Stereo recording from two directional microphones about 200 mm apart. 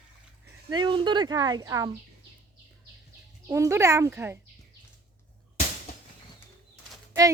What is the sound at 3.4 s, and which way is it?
Speech, 15° right (ahead or behind).